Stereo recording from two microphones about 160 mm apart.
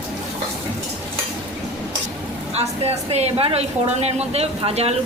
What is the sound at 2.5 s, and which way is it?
Speech, 40° right (ahead or behind).